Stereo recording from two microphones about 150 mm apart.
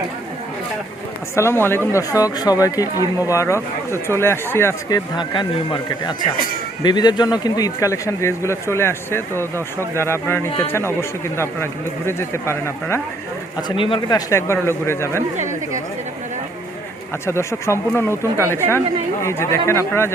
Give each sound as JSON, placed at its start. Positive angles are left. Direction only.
{"t": 1.4, "sound": "a man's voice", "side_deg": 15}
{"t": 13.6, "sound": "a man's voice", "side_deg": 30}
{"t": 14.3, "sound": "a man's voice", "side_deg": 20}
{"t": 15.4, "sound": "speech", "side_deg": -55}
{"t": 17.2, "sound": "a man's voice", "side_deg": 20}
{"t": 18.1, "sound": "speech", "side_deg": -15}
{"t": 19.2, "sound": "a man's voice", "side_deg": 15}